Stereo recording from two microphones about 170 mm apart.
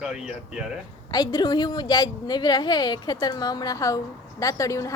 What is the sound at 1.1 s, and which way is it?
A woman's voice, 25° left (ahead or behind).